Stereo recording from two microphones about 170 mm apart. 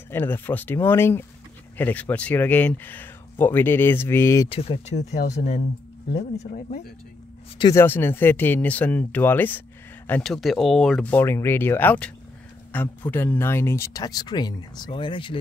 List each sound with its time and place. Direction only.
0.1 s speech: 10° left (ahead or behind)
4.5 s speech: 35° left (ahead or behind)
7.7 s speech: 15° left (ahead or behind); by 15.3 s 30° left (ahead or behind)